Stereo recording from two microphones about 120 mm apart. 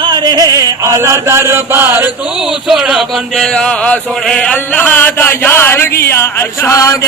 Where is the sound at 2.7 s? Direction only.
5° right (ahead or behind).